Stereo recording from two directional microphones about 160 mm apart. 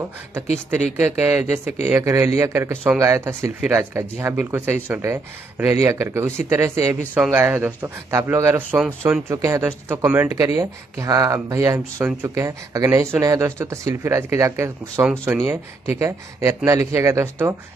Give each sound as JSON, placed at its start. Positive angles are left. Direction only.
{"t": 1.2, "sound": "speech", "side_deg": -15}